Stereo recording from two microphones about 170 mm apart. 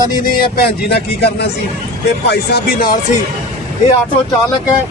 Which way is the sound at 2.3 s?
70° left (ahead or behind).